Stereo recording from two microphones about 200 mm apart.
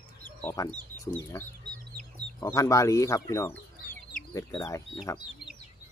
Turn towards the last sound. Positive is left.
turn(degrees=15)  # may be behind; listen again after turning